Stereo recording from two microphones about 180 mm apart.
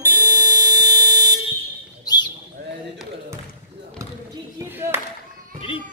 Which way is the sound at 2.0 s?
20° left (ahead or behind).